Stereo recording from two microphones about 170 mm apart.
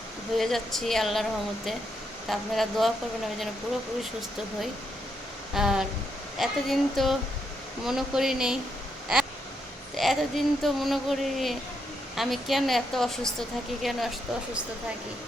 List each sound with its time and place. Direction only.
0.3 s speech: centre (ahead or behind)
5.5 s speech: 5° right (ahead or behind)
9.9 s speech: centre (ahead or behind)